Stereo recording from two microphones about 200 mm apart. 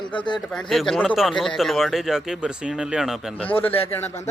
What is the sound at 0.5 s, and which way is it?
Speech, centre (ahead or behind).